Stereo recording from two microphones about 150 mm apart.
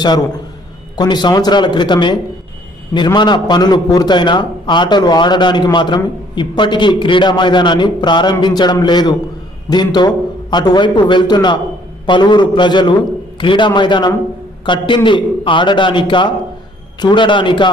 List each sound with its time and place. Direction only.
0.9 s a man's voice: 30° left (ahead or behind)